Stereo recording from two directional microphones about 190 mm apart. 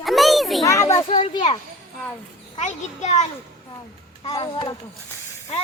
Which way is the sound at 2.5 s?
40° left (ahead or behind).